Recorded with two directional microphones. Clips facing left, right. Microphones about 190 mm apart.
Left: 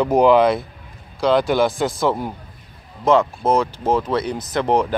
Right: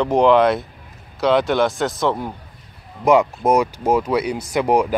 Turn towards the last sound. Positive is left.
turn(degrees=-10)  # may be behind; listen again after turning